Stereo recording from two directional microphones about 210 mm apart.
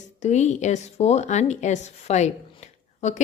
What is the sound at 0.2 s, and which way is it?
A woman's voice, 35° left (ahead or behind).